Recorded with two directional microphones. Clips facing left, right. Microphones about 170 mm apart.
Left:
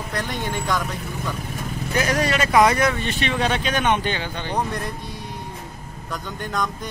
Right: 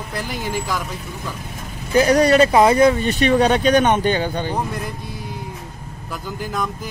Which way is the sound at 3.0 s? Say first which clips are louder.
Right 7 dB; 40° right (ahead or behind).